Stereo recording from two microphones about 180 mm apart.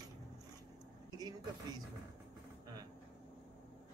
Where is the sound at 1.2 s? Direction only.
20° right (ahead or behind).